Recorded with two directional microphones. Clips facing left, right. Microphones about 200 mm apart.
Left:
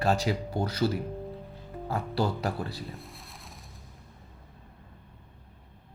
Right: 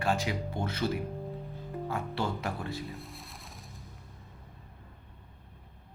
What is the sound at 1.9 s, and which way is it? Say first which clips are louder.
Speech: left 5 dB; 35° left (ahead or behind).